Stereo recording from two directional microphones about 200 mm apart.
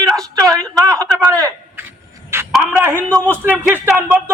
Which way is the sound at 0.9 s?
15° right (ahead or behind).